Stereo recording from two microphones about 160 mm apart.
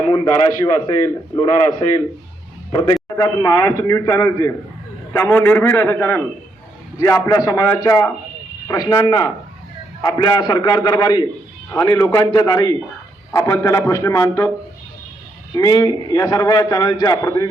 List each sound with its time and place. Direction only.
0.6 s a man's voice: 20° left (ahead or behind)
7.3 s a man's voice: 20° left (ahead or behind)
15.5 s a man's voice: 20° left (ahead or behind)